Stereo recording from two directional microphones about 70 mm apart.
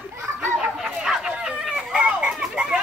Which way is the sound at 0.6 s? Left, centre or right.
Centre.